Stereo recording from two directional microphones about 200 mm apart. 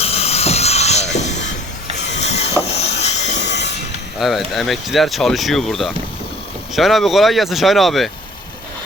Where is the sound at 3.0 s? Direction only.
35° left (ahead or behind).